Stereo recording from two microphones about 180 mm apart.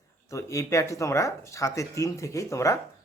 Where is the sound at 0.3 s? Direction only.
15° left (ahead or behind).